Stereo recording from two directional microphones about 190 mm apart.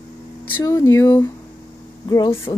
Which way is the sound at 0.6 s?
15° left (ahead or behind).